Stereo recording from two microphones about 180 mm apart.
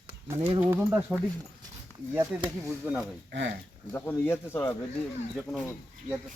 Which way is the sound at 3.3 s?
70° right (ahead or behind).